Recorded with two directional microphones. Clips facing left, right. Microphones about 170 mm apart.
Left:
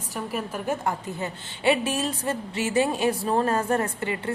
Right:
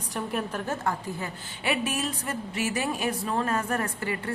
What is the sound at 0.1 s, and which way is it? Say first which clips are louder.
Speech: even; 5° left (ahead or behind).